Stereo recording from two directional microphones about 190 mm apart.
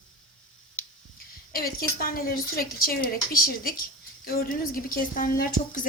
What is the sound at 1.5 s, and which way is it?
A woman's voice, 50° left (ahead or behind).